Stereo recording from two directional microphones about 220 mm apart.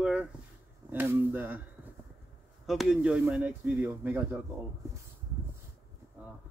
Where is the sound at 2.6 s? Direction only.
Centre (ahead or behind).